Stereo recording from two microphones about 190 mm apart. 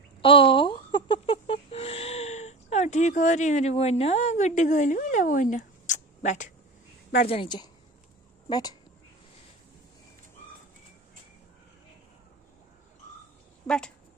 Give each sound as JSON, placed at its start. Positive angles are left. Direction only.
{"t": 0.2, "sound": "a sound", "side_deg": 30}
{"t": 7.2, "sound": "a woman's voice", "side_deg": 25}
{"t": 13.7, "sound": "speech", "side_deg": 5}